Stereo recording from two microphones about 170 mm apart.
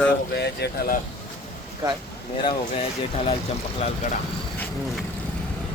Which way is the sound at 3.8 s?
40° left (ahead or behind).